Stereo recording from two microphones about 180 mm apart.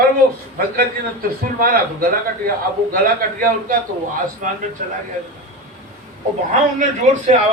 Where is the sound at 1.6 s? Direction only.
55° right (ahead or behind).